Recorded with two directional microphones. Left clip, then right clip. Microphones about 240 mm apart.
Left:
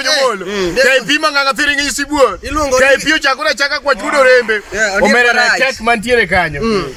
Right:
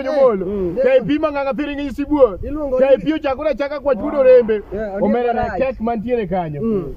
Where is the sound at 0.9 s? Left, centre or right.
Centre.